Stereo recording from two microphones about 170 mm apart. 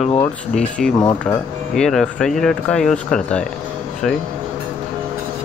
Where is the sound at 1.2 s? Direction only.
5° left (ahead or behind).